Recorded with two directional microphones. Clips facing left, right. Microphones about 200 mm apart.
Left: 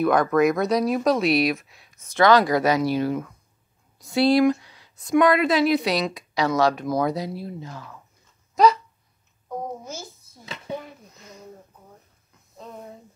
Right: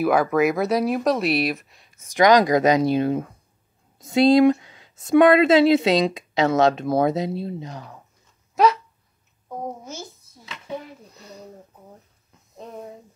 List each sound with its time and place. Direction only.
0.0 s speech: 5° right (ahead or behind)
2.0 s speech: 15° right (ahead or behind)
8.6 s speech: 5° right (ahead or behind)
11.1 s a sound: 35° right (ahead or behind)